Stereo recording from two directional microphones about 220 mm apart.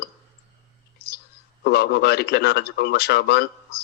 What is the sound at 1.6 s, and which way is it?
Speech, 45° left (ahead or behind).